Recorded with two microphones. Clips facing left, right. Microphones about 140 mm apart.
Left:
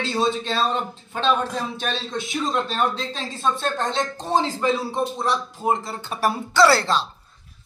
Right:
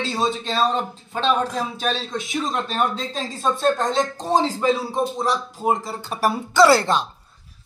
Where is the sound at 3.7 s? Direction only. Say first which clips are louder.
Right 3 dB; 40° right (ahead or behind).